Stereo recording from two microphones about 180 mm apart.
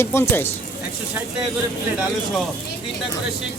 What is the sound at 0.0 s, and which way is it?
Speech, 15° left (ahead or behind).